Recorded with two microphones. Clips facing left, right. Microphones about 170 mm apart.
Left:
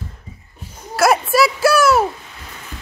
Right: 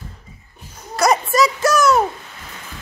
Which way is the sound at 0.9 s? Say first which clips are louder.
Left 2 dB; 5° left (ahead or behind).